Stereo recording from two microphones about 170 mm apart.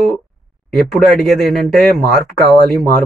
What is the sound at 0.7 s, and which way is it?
Speech, centre (ahead or behind).